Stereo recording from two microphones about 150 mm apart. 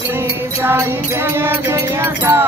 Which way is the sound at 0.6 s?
15° right (ahead or behind).